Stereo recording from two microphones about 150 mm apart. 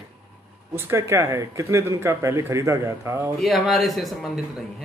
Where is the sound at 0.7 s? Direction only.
15° right (ahead or behind).